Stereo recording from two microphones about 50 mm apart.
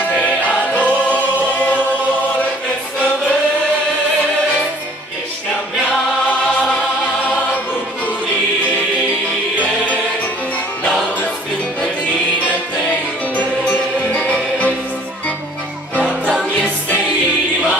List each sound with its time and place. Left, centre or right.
0.1 s music: left
1.5 s choir: left
13.4 s music: left
16.0 s music: left